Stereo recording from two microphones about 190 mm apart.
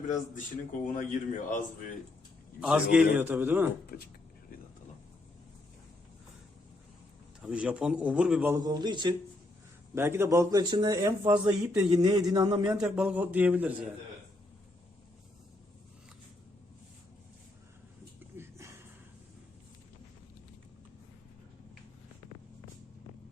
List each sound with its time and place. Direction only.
0.9 s a man's voice: 45° left (ahead or behind)
2.6 s a man's voice: 5° right (ahead or behind)
7.4 s a man's voice: 5° right (ahead or behind)
8.6 s a man's voice: 20° right (ahead or behind)
11.6 s a man's voice: 5° right (ahead or behind)
11.9 s a man's voice: 20° right (ahead or behind)
12.8 s a man's voice: 5° right (ahead or behind)